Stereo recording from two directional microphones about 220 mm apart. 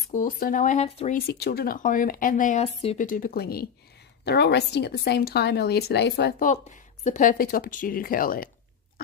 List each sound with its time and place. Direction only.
0.1 s speech: 40° left (ahead or behind)
1.2 s speech: 45° left (ahead or behind)
7.1 s speech: 35° left (ahead or behind)